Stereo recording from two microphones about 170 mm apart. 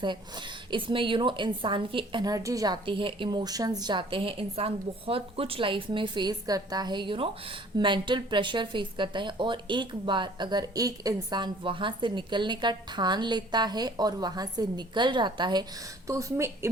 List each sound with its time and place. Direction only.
0.0 s a woman's voice: 25° right (ahead or behind)